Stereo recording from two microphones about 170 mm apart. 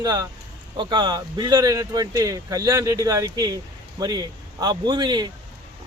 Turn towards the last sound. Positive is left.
turn(degrees=-25)  # may be behind; listen again after turning